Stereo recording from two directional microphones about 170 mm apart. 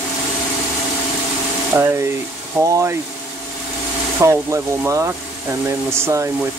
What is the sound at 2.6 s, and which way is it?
Speech, 15° right (ahead or behind).